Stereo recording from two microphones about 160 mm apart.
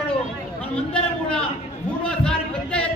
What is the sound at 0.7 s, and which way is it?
A man's voice, 5° left (ahead or behind).